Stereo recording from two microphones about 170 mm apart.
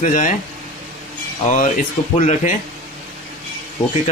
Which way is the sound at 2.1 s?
45° left (ahead or behind).